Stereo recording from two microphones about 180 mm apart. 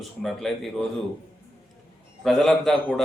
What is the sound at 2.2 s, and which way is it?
Speech, centre (ahead or behind).